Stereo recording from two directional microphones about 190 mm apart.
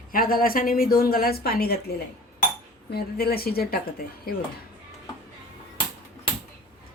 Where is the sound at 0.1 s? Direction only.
50° left (ahead or behind).